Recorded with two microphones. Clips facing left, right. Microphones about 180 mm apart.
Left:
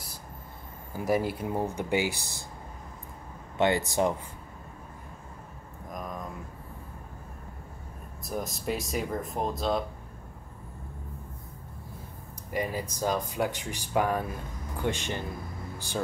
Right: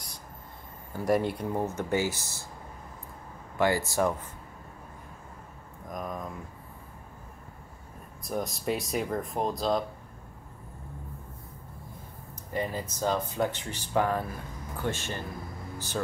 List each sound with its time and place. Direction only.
0.9 s speech: 5° left (ahead or behind)
3.5 s speech: 20° left (ahead or behind)
5.9 s speech: centre (ahead or behind)
8.2 s speech: centre (ahead or behind)
12.5 s speech: 10° left (ahead or behind)